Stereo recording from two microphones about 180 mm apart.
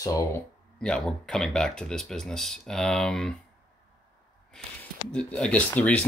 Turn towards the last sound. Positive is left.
turn(degrees=10)  # may be behind; listen again after turning